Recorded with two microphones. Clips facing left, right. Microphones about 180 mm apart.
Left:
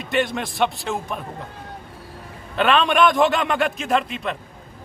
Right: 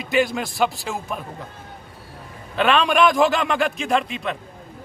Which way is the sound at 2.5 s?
Centre (ahead or behind).